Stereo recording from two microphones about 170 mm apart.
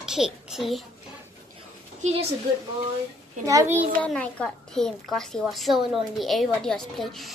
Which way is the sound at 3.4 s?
15° right (ahead or behind).